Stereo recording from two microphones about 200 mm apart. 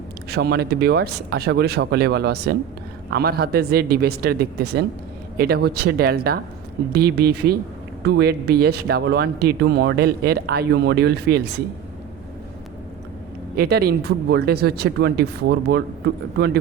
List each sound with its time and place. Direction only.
0.3 s speech: 55° right (ahead or behind)
13.6 s speech: 50° right (ahead or behind)